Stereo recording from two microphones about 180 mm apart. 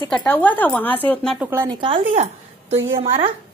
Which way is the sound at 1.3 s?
10° right (ahead or behind).